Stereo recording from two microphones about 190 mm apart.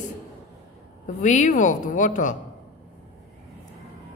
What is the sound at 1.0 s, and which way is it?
A woman's voice, 40° left (ahead or behind).